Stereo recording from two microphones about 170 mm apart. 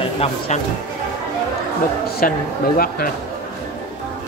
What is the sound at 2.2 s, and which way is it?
Speech, 55° left (ahead or behind).